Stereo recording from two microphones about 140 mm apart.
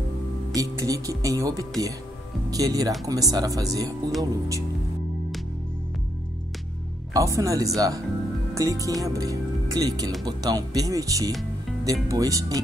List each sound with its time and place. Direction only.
0.6 s speech: 25° right (ahead or behind)
7.2 s speech: 25° right (ahead or behind)